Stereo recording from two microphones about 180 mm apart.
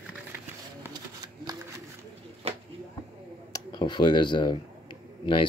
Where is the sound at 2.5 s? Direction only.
35° right (ahead or behind).